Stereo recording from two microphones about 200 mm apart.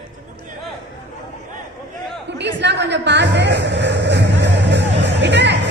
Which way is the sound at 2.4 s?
60° right (ahead or behind).